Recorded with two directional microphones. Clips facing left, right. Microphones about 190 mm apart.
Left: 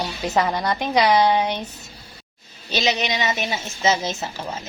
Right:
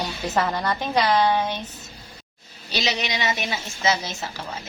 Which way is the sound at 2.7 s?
20° left (ahead or behind).